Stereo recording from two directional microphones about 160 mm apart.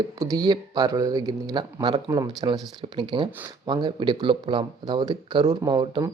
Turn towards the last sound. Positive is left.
turn(degrees=-30)  # may be behind; listen again after turning